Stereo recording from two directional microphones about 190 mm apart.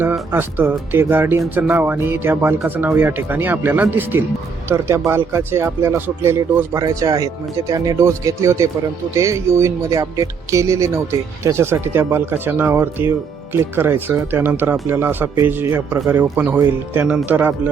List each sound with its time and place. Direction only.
0.0 s speech: 10° right (ahead or behind)